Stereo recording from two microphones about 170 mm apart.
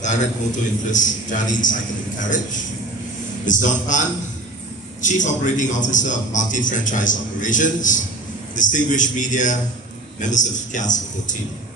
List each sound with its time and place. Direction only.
0.0 s a sound: 45° left (ahead or behind)
0.9 s a man's voice: 50° left (ahead or behind)
5.0 s a man's voice: 45° left (ahead or behind)